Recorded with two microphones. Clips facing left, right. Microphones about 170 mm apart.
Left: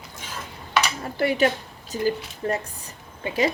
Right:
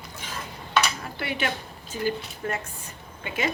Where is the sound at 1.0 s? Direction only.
40° left (ahead or behind).